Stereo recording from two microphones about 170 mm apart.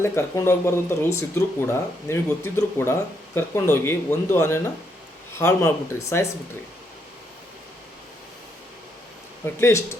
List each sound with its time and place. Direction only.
0.0 s speech: 15° left (ahead or behind)
9.6 s speech: 15° left (ahead or behind)